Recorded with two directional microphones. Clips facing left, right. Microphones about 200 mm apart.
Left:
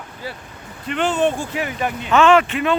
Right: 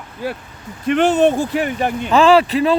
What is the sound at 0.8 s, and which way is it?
Speech, 60° right (ahead or behind).